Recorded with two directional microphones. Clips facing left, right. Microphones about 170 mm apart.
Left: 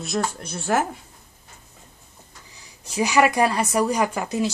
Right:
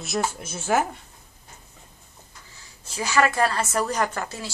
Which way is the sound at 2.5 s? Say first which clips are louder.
Left 9 dB; 15° left (ahead or behind).